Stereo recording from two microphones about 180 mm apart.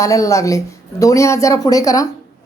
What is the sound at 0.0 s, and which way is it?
Speech, 15° left (ahead or behind).